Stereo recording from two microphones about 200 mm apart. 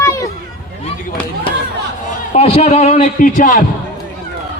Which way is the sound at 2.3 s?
35° left (ahead or behind).